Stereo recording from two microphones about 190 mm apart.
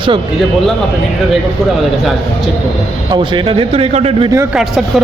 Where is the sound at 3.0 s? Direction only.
25° right (ahead or behind).